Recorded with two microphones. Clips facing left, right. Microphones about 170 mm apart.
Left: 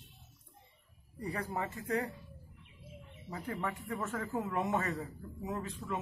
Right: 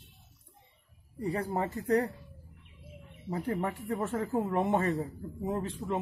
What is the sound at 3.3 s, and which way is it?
Speech, 30° right (ahead or behind).